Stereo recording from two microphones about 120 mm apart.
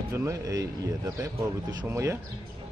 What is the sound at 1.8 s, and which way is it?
Speech, 25° right (ahead or behind).